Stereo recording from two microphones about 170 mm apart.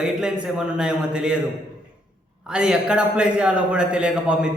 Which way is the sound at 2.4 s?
5° right (ahead or behind).